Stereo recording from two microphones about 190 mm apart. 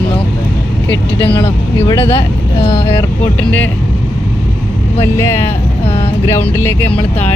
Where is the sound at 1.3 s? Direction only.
15° left (ahead or behind).